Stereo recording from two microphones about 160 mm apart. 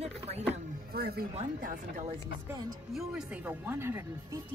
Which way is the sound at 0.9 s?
80° right.